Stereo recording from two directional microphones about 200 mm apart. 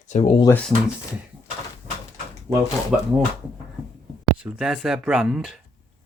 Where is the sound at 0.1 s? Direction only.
30° left (ahead or behind).